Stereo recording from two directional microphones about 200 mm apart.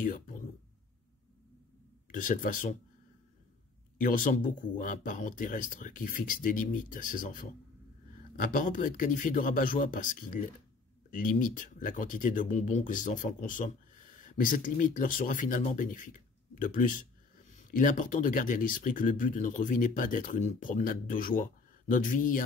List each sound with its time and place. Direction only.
0.0 s a sound: 40° left (ahead or behind)
2.0 s speech: 40° left (ahead or behind)
4.0 s speech: 40° left (ahead or behind)